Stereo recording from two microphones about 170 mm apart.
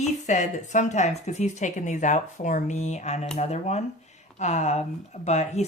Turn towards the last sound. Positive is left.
turn(degrees=40)  # may be behind; listen again after turning